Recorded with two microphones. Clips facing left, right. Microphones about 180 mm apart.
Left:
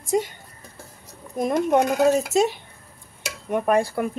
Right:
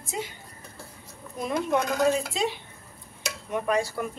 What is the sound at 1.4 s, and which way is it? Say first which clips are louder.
Speech: left 6 dB; 45° left (ahead or behind).